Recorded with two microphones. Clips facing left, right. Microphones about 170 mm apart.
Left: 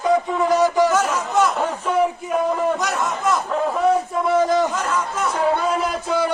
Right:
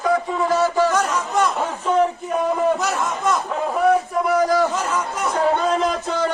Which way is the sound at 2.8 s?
Centre (ahead or behind).